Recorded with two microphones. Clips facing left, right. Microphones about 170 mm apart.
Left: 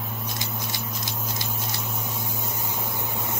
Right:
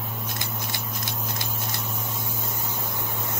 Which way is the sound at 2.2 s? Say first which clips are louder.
Left 1 dB; 15° left (ahead or behind).